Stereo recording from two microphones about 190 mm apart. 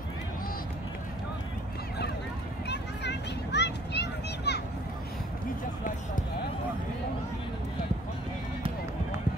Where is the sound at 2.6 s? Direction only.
65° left (ahead or behind).